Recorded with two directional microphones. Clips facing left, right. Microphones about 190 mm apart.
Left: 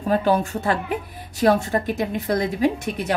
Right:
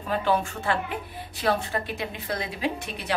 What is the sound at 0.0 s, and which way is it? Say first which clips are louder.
Speech: left 5 dB; 40° left (ahead or behind).